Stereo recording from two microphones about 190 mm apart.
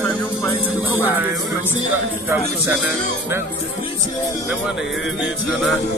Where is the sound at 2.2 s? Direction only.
10° right (ahead or behind).